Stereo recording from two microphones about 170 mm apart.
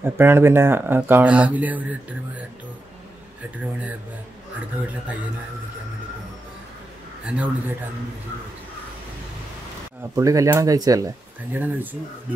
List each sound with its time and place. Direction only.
0.0 s speech: 15° right (ahead or behind)
7.2 s speech: 10° right (ahead or behind)
10.1 s speech: 20° right (ahead or behind)